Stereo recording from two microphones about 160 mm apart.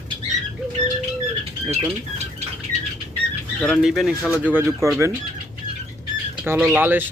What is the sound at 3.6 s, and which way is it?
Speech, centre (ahead or behind).